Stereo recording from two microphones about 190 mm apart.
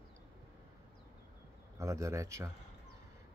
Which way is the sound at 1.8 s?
15° right (ahead or behind).